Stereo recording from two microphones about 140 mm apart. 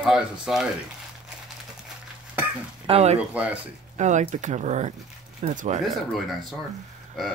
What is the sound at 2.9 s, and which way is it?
Speech, 50° right (ahead or behind).